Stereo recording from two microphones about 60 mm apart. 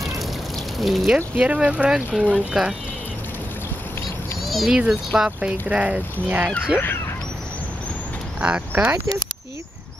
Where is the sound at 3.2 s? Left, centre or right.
Left.